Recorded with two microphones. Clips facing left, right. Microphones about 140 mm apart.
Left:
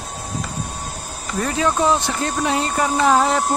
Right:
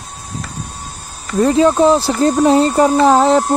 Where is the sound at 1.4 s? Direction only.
30° right (ahead or behind).